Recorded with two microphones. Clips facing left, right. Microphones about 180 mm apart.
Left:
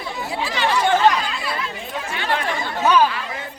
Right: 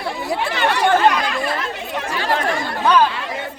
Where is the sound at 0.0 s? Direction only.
60° right (ahead or behind).